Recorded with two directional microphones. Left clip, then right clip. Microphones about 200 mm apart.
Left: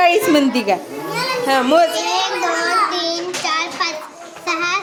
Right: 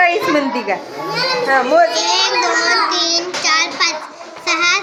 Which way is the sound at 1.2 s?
30° left (ahead or behind).